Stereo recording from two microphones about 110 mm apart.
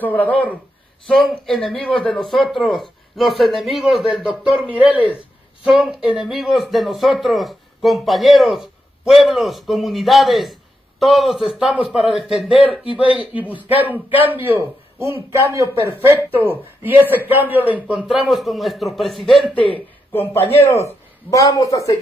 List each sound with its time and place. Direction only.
0.0 s speech: 15° left (ahead or behind)
1.0 s a man's voice: centre (ahead or behind)
12.5 s speech: 60° left (ahead or behind)
12.9 s a man's voice: 15° right (ahead or behind)
19.5 s a man's voice: 15° left (ahead or behind); by 21.9 s 30° left (ahead or behind)